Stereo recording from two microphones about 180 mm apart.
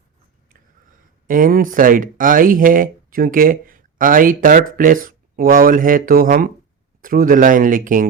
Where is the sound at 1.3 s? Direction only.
50° right (ahead or behind).